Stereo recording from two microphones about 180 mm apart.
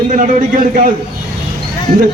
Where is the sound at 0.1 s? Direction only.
45° right (ahead or behind).